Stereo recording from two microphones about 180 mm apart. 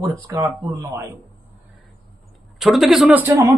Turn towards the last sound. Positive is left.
turn(degrees=-15)  # may be behind; listen again after turning